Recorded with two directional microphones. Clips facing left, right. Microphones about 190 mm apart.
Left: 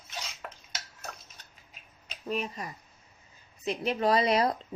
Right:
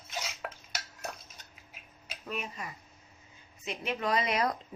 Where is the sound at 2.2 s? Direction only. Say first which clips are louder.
Left 5 dB; 35° left (ahead or behind).